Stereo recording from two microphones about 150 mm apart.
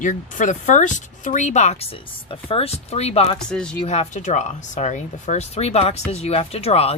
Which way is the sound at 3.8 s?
45° left (ahead or behind).